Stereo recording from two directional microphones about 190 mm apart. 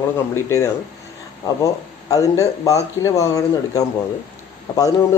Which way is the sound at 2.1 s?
15° left (ahead or behind).